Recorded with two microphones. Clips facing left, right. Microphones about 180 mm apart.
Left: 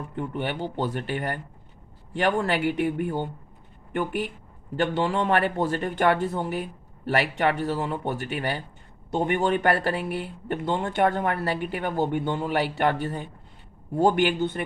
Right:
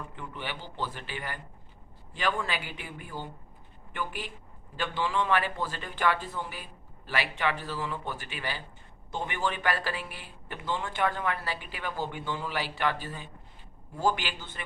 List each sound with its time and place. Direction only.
0.2 s a man's voice: 60° left (ahead or behind)